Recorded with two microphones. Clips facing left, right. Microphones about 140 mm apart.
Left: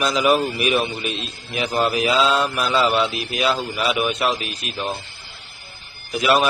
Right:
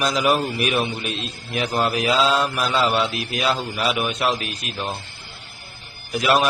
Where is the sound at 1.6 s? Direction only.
Centre (ahead or behind).